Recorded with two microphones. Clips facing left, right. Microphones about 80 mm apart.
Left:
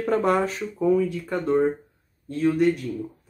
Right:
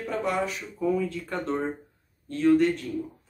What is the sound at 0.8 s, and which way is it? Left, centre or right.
Speech, left.